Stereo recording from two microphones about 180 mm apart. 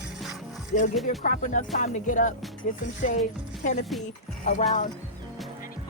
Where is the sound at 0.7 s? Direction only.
45° left (ahead or behind).